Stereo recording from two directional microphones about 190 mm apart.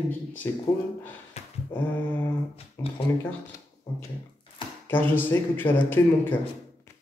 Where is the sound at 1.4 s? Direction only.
35° left (ahead or behind).